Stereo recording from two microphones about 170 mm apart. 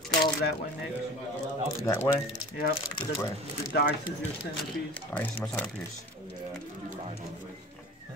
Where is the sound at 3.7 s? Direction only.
90° left.